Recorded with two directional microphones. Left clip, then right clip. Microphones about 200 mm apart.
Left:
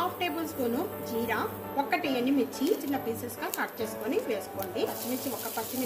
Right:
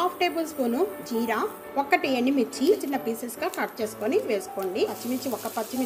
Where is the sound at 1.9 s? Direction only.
40° right (ahead or behind).